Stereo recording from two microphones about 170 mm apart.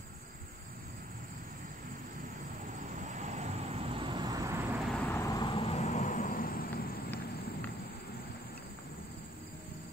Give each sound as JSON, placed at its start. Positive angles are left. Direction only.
{"t": 3.0, "sound": "vehicle", "side_deg": -45}
{"t": 4.9, "sound": "vehicle", "side_deg": 10}